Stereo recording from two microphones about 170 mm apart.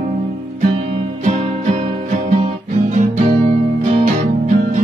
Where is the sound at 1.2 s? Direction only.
45° right (ahead or behind).